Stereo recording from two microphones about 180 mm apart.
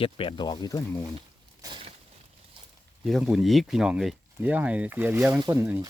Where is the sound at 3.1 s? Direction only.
Centre (ahead or behind).